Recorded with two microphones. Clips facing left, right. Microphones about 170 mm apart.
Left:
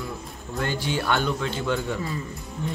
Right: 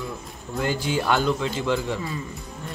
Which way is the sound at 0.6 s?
10° right (ahead or behind).